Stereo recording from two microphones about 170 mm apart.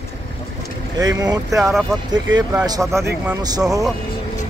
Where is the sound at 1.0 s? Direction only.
20° right (ahead or behind).